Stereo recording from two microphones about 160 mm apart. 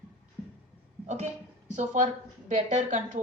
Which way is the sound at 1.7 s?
50° right (ahead or behind).